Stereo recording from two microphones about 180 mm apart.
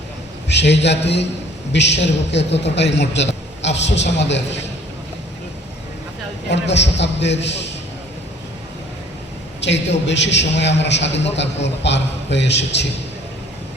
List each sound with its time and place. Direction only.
0.4 s a man's voice: 75° left (ahead or behind)
6.5 s a man's voice: 75° left (ahead or behind)
9.6 s a man's voice: 80° left